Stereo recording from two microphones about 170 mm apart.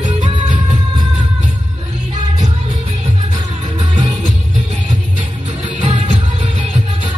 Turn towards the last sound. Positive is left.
turn(degrees=-40)  # may be behind; listen again after turning